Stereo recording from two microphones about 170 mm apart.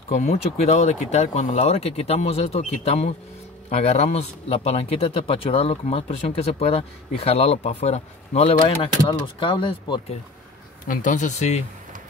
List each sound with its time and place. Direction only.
0.1 s speech: 40° left (ahead or behind)
10.9 s speech: 50° left (ahead or behind)